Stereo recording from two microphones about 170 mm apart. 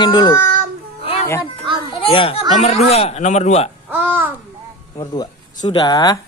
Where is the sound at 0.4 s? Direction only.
55° right (ahead or behind).